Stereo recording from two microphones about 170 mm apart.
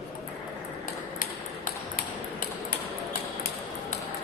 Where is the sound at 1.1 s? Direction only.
55° left (ahead or behind).